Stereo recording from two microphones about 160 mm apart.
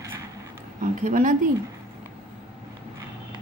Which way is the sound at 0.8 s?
55° right (ahead or behind).